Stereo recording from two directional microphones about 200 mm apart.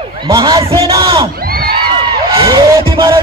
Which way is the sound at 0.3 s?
20° right (ahead or behind).